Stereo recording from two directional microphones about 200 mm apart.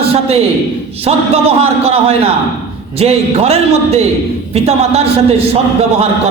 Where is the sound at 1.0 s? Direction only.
30° right (ahead or behind).